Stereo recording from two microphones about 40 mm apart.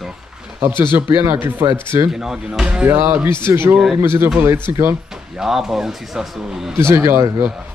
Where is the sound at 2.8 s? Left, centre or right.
Right.